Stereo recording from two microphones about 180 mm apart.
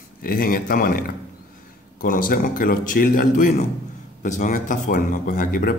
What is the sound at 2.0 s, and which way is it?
Speech, 50° left (ahead or behind).